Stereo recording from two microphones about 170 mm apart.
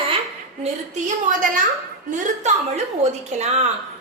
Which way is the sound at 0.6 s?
45° right (ahead or behind).